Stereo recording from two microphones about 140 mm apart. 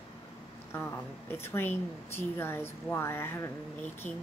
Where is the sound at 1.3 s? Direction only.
15° left (ahead or behind).